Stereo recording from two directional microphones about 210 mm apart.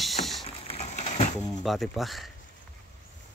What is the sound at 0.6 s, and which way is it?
Crushing, 30° left (ahead or behind).